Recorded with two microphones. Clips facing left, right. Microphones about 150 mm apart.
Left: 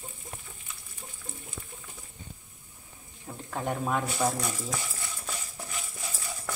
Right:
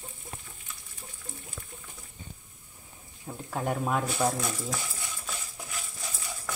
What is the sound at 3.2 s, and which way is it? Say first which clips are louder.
Speech: right 1 dB; 5° right (ahead or behind).